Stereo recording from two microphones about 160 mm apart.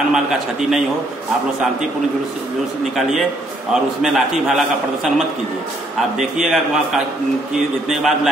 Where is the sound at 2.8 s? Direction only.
Centre (ahead or behind).